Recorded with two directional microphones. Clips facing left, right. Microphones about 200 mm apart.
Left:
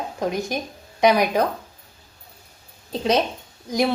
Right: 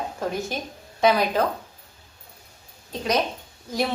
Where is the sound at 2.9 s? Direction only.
30° left (ahead or behind).